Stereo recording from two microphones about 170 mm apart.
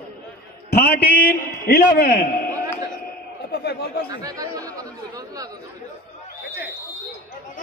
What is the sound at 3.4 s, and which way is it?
Speech, 75° left (ahead or behind).